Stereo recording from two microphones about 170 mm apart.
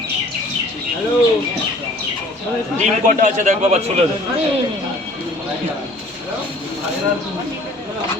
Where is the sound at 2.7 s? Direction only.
45° right (ahead or behind).